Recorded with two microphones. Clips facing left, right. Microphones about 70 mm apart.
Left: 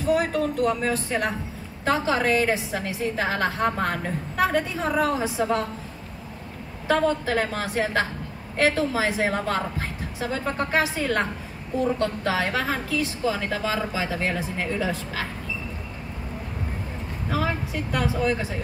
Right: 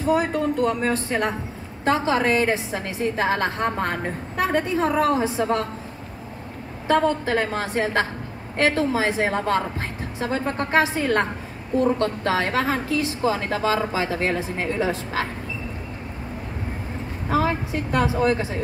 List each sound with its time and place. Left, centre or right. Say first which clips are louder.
0.0 s a woman's voice: right 1 dB; right
6.9 s a woman's voice: right 2 dB; right
17.3 s a woman's voice: right 5 dB; right